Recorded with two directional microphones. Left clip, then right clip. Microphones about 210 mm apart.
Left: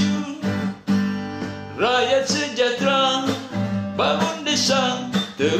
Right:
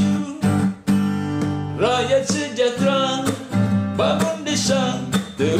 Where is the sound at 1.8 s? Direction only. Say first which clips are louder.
Even; 25° right (ahead or behind).